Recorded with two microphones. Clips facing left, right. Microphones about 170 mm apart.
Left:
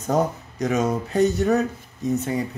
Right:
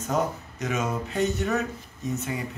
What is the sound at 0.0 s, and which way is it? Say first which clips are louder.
A man's voice: left 5 dB; 35° left (ahead or behind).